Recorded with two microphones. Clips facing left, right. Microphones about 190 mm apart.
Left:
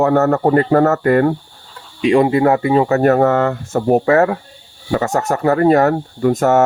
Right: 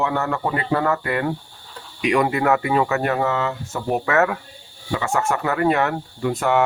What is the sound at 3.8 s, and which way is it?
Speech, 35° left (ahead or behind).